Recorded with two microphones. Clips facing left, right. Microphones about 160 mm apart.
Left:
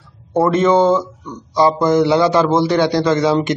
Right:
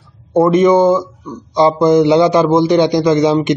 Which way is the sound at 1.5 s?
20° right (ahead or behind).